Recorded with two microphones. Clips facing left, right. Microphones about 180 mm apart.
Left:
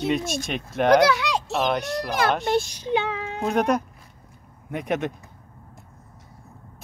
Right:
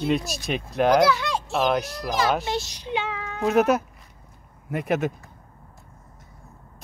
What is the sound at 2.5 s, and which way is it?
Speech, 50° left (ahead or behind).